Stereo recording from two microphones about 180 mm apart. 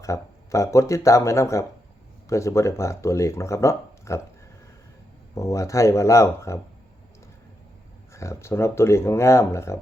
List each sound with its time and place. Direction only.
0.0 s speech: 15° left (ahead or behind)
5.3 s speech: 15° left (ahead or behind)
8.1 s speech: 15° left (ahead or behind)